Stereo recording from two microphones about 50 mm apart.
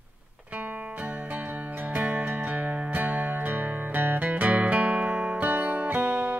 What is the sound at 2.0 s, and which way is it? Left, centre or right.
Music, right.